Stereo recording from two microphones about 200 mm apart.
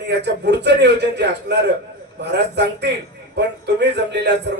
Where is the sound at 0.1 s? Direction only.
60° right (ahead or behind).